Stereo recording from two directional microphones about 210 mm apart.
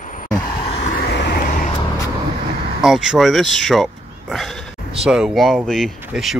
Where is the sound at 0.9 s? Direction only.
50° left (ahead or behind).